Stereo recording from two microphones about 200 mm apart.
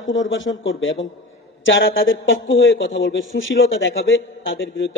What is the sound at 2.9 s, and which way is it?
Speech, 75° left (ahead or behind).